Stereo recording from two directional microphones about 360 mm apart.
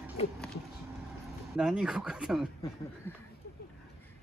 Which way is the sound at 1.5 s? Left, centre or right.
Centre.